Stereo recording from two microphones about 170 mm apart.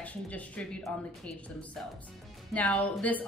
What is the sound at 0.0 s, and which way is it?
A woman's voice, 10° left (ahead or behind).